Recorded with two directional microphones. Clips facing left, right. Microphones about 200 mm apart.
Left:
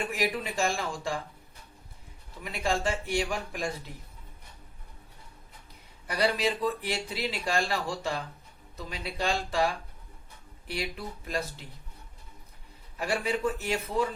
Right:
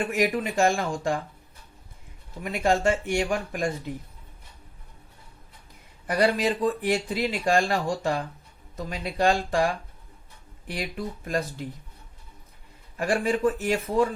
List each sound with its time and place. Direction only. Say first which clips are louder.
0.1 s speech: right 6 dB; 50° right (ahead or behind)
2.4 s speech: right 6 dB; 50° right (ahead or behind)
6.1 s speech: right 5 dB; 45° right (ahead or behind)
10.7 s speech: right 3 dB; 45° right (ahead or behind)
13.0 s speech: right 5 dB; 45° right (ahead or behind)